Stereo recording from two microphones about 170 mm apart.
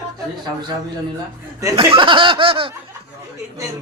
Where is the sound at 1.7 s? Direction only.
30° right (ahead or behind).